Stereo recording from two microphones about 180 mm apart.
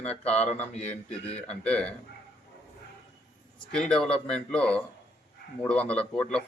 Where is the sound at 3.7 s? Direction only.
5° left (ahead or behind).